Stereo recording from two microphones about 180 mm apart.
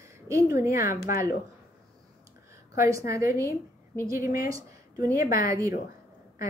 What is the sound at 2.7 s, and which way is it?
A woman's voice, 15° right (ahead or behind).